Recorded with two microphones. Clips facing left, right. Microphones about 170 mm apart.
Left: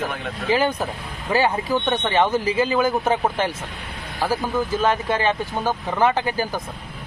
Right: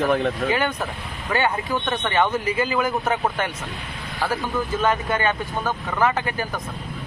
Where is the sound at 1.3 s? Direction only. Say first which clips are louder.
Left 3 dB; 30° left (ahead or behind).